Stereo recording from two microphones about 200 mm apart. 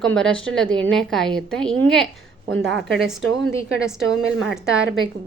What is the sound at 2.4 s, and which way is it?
Speech, 80° right.